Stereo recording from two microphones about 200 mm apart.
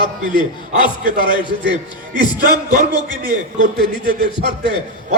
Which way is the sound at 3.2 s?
40° right (ahead or behind).